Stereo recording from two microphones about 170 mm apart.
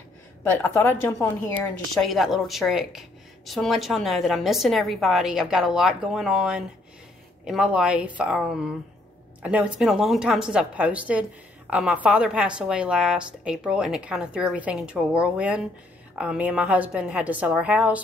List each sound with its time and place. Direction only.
0.4 s a woman's voice: 15° left (ahead or behind); by 18.0 s 10° right (ahead or behind)